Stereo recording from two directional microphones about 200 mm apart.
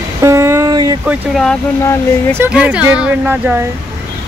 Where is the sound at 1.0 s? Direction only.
5° right (ahead or behind).